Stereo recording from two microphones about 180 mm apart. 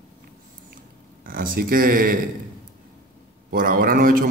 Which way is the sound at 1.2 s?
50° right (ahead or behind).